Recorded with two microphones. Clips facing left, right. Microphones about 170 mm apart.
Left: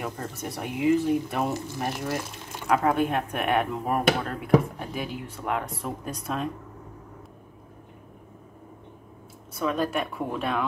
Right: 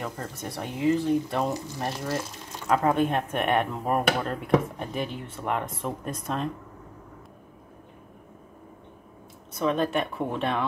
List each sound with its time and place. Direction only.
0.0 s speech: 10° left (ahead or behind)
2.6 s speech: centre (ahead or behind)
9.5 s speech: centre (ahead or behind)